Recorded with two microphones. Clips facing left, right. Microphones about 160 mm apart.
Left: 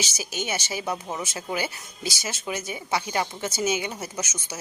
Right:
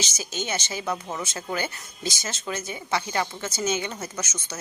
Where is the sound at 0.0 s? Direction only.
10° left (ahead or behind).